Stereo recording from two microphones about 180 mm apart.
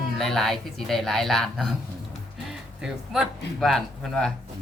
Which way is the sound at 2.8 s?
5° right (ahead or behind).